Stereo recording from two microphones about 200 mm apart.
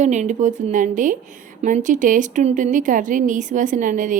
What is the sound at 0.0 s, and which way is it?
A woman's voice, 35° right (ahead or behind).